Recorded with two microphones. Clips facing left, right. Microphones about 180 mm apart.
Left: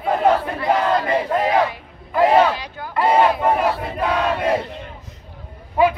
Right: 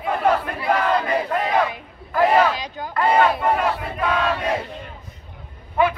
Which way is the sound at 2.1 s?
25° left (ahead or behind).